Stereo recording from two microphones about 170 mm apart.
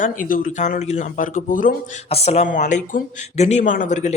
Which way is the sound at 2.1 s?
35° left (ahead or behind).